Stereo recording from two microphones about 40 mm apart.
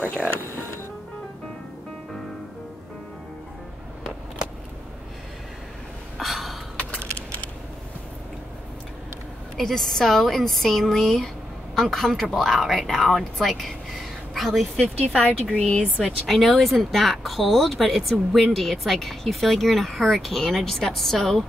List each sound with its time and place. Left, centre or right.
6.1 s a sound: centre
9.6 s a woman's voice: centre
15.1 s speech: left
16.3 s speech: centre